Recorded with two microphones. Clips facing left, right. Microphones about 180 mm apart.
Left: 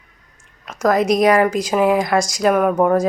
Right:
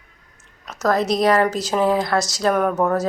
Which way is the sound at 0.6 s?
10° left (ahead or behind).